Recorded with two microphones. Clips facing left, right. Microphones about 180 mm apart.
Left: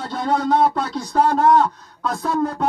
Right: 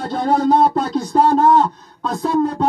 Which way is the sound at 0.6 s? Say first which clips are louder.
Right 3 dB; 30° right (ahead or behind).